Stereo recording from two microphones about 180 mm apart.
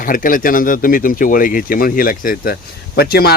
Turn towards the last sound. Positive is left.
turn(degrees=60)  # may be behind; listen again after turning